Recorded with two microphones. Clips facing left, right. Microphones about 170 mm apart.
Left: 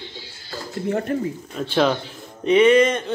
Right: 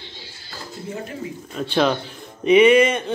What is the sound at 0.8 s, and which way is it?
Speech, 65° left (ahead or behind).